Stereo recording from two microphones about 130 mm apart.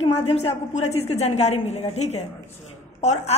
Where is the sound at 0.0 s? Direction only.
50° left (ahead or behind).